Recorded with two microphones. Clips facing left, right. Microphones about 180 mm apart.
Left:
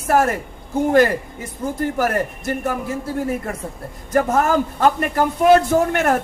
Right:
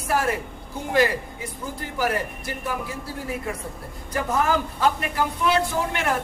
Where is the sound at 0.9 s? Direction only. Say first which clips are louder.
Left 5 dB; 50° left (ahead or behind).